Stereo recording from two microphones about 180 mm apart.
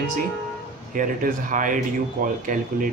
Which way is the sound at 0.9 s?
50° right (ahead or behind).